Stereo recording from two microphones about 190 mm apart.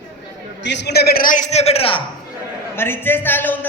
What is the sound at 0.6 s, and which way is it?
A man's voice, 65° left (ahead or behind).